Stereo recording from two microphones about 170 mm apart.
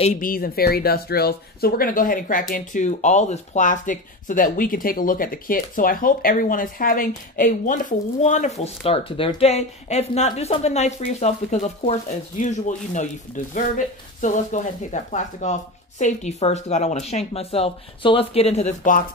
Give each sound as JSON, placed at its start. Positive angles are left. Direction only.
{"t": 0.0, "sound": "speech", "side_deg": 50}